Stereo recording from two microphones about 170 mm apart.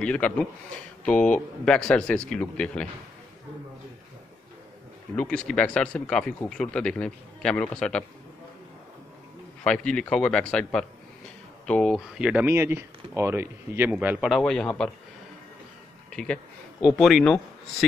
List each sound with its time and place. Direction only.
0.0 s a man's voice: 5° left (ahead or behind)
5.1 s speech: 5° left (ahead or behind)
9.6 s speech: 5° left (ahead or behind)
16.1 s speech: 5° left (ahead or behind)